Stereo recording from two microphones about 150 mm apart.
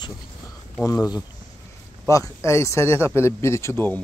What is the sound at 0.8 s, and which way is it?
Speech, 25° left (ahead or behind).